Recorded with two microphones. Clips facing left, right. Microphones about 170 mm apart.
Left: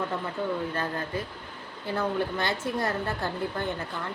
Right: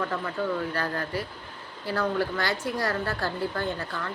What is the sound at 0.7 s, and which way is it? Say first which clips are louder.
Speech: right 1 dB; 20° left (ahead or behind).